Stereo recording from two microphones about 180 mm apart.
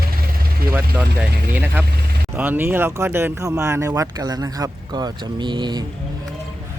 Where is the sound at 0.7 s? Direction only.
5° right (ahead or behind).